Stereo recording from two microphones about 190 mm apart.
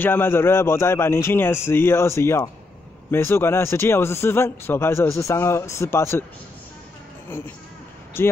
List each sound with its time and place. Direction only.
0.0 s speech: 10° left (ahead or behind)
7.2 s speech: 10° left (ahead or behind)